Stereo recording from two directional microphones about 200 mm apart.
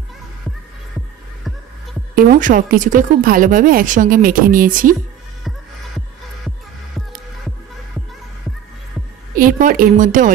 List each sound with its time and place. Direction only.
2.1 s speech: 40° right (ahead or behind)
9.3 s speech: 45° right (ahead or behind)